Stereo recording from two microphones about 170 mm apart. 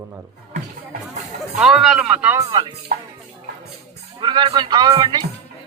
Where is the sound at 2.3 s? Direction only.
25° right (ahead or behind).